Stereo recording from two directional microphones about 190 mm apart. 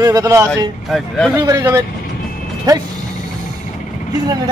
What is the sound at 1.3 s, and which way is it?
A man's voice, 20° right (ahead or behind).